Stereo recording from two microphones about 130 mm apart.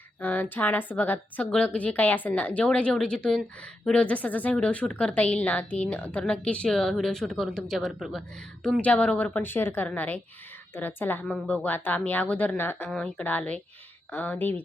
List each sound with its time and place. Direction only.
0.2 s a woman's voice: 10° left (ahead or behind)